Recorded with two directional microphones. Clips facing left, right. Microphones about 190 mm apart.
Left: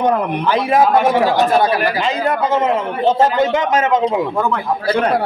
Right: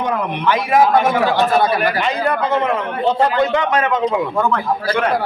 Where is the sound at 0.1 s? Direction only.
30° left (ahead or behind).